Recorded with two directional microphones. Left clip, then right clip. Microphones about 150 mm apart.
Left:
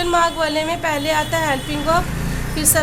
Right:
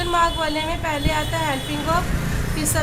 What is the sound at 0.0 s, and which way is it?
A woman's voice, 30° left (ahead or behind).